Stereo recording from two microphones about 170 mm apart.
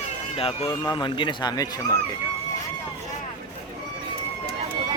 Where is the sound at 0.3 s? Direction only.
35° left (ahead or behind).